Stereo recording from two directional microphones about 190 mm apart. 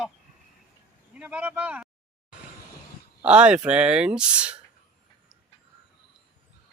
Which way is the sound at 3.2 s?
5° right (ahead or behind).